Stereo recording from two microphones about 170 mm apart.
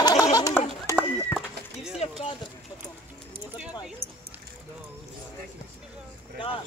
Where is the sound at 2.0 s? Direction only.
40° left (ahead or behind).